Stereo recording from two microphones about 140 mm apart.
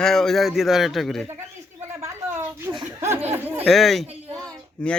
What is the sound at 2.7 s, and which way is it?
Speech, 35° right (ahead or behind).